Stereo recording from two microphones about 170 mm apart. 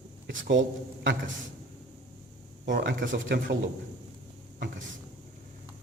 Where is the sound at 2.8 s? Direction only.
85° right.